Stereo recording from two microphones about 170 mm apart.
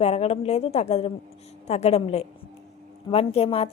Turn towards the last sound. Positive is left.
turn(degrees=35)  # may be behind; listen again after turning